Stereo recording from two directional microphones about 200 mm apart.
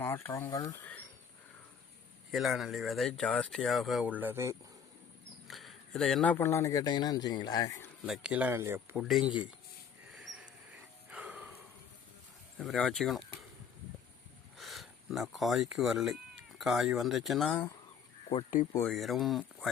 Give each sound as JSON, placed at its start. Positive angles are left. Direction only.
{"t": 0.0, "sound": "speech", "side_deg": 10}
{"t": 2.3, "sound": "speech", "side_deg": 0}
{"t": 5.5, "sound": "speech", "side_deg": 0}
{"t": 8.0, "sound": "speech", "side_deg": -5}
{"t": 10.2, "sound": "a sound", "side_deg": -5}
{"t": 12.5, "sound": "speech", "side_deg": 0}
{"t": 14.6, "sound": "speech", "side_deg": 0}
{"t": 18.3, "sound": "speech", "side_deg": 35}
{"t": 18.7, "sound": "speech", "side_deg": 5}